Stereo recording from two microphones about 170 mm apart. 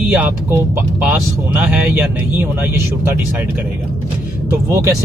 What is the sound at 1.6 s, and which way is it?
Speech, 10° right (ahead or behind).